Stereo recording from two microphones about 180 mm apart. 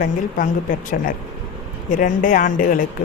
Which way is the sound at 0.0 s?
50° left (ahead or behind).